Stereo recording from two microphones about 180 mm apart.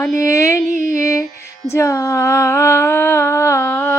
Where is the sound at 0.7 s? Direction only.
45° right (ahead or behind).